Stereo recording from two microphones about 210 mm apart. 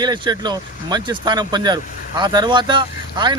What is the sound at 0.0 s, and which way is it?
Speech, 20° right (ahead or behind).